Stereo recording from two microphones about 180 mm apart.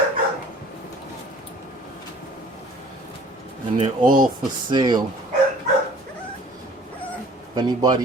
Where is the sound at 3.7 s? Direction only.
45° right (ahead or behind).